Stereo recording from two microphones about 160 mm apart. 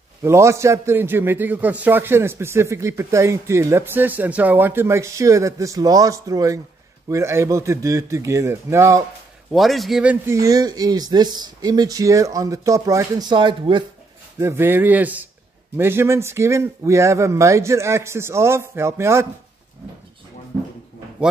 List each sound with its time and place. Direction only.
0.2 s a man's voice: 15° right (ahead or behind)
9.5 s a man's voice: centre (ahead or behind)
10.2 s speech: 20° right (ahead or behind)
14.4 s a man's voice: 15° right (ahead or behind)